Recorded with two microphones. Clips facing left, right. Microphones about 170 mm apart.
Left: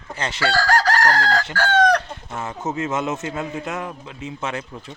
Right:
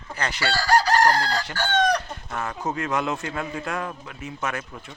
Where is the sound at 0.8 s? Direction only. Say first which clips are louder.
Even; 90° left.